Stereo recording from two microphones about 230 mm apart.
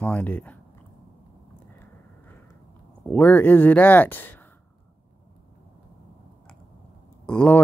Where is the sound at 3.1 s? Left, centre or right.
Centre.